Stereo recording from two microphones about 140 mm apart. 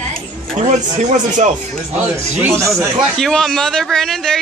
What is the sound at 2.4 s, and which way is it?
Speech, 20° right (ahead or behind).